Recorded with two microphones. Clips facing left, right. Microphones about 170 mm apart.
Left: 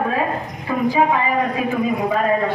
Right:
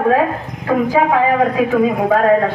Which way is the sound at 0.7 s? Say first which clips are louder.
Right 3 dB; 90° right.